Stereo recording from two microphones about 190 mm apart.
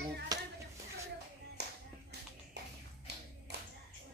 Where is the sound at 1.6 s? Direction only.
60° right (ahead or behind).